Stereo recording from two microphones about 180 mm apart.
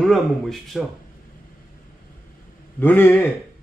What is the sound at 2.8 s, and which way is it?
Speech, 10° left (ahead or behind).